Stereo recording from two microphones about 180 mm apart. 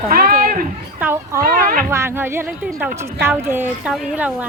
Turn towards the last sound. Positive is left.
turn(degrees=-10)  # may be behind; listen again after turning